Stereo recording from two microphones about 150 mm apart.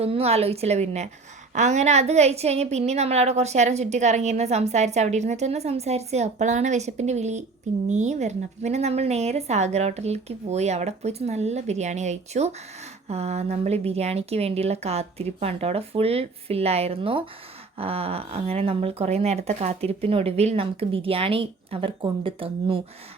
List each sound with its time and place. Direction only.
0.0 s a woman's voice: 40° right (ahead or behind)